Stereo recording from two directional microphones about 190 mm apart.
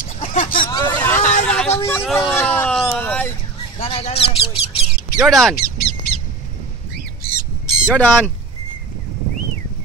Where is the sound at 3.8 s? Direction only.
30° left (ahead or behind).